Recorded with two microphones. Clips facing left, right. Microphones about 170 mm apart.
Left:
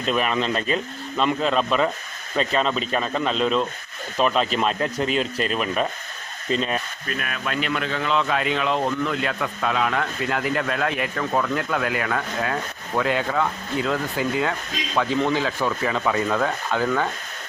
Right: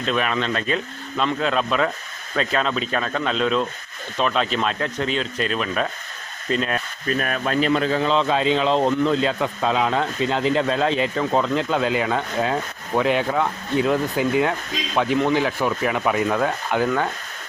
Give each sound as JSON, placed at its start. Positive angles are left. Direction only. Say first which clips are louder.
{"t": 0.0, "sound": "speech", "louder": "even", "side_deg": 0}
{"t": 7.2, "sound": "speech", "louder": "right 6 dB", "side_deg": -40}